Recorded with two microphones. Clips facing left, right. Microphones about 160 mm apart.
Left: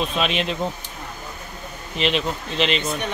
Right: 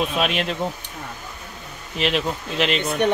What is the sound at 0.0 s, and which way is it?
Speech, 5° right (ahead or behind).